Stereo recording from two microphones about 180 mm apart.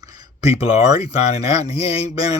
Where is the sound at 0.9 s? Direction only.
35° left (ahead or behind).